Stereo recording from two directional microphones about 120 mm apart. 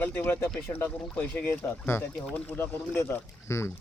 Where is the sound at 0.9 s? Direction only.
10° left (ahead or behind).